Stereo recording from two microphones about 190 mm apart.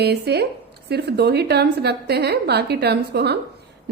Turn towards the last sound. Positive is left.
turn(degrees=-60)  # may be behind; listen again after turning